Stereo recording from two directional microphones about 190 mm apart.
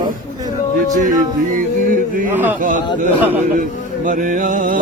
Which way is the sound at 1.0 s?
45° right (ahead or behind).